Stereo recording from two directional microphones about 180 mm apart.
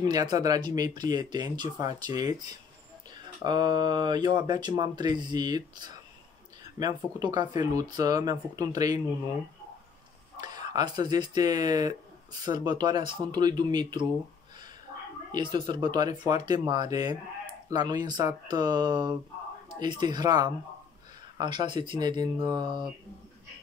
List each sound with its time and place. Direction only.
0.0 s speech: 20° right (ahead or behind)
3.4 s speech: 25° right (ahead or behind)
10.3 s speech: 20° right (ahead or behind)
15.3 s speech: 25° right (ahead or behind)